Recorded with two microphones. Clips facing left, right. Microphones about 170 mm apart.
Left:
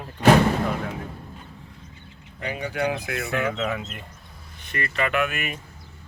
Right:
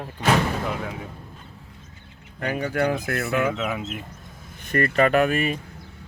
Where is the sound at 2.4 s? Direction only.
55° right (ahead or behind).